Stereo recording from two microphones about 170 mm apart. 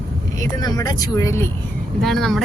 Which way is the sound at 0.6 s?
20° left (ahead or behind).